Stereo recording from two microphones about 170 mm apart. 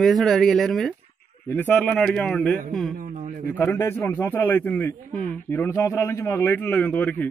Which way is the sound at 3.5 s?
10° left (ahead or behind).